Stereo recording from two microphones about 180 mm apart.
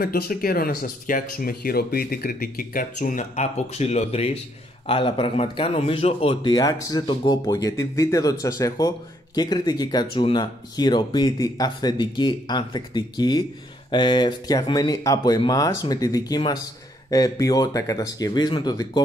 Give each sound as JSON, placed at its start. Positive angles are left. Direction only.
{"t": 0.0, "sound": "speech", "side_deg": 55}